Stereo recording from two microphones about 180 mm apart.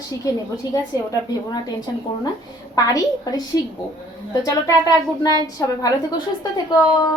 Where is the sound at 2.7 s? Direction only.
20° left (ahead or behind).